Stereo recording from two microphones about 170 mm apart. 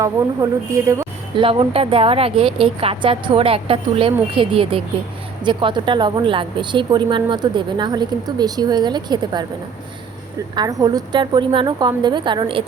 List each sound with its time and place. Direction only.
0.7 s speech: 15° right (ahead or behind)
1.4 s a woman's voice: 30° right (ahead or behind)
10.5 s a woman's voice: 25° right (ahead or behind)